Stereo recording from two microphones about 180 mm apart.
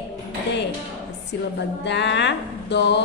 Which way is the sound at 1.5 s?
75° left (ahead or behind).